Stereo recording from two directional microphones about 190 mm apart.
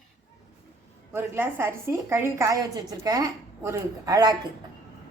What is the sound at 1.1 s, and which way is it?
A woman's voice, 10° right (ahead or behind).